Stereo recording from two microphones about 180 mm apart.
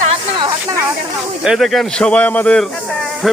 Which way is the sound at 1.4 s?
Centre (ahead or behind).